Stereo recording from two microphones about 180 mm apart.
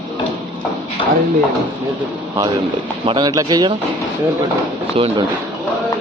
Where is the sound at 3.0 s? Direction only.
25° right (ahead or behind).